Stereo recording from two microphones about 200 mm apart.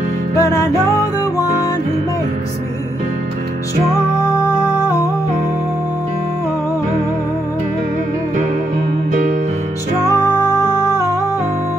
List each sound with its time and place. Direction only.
0.4 s music: 15° left (ahead or behind)
10.5 s music: 20° left (ahead or behind)